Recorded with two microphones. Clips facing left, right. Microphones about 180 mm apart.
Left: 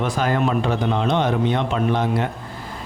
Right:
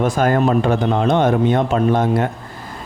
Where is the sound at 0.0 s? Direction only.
45° right (ahead or behind).